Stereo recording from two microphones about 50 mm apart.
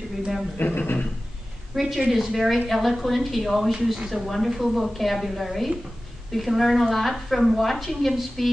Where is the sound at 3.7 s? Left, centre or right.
Centre.